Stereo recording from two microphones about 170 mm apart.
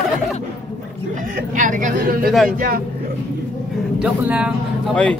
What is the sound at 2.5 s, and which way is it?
Speech, 60° right (ahead or behind).